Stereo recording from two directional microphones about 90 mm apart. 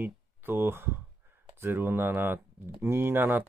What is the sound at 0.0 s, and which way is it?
Speech, 25° right (ahead or behind).